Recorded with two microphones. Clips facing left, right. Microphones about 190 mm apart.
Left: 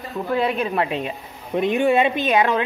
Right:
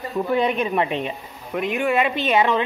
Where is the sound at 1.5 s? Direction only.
30° left (ahead or behind).